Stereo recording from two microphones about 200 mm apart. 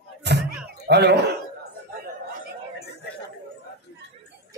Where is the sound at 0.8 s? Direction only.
55° right (ahead or behind).